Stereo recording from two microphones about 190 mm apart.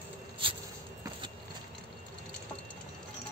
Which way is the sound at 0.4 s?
25° right (ahead or behind).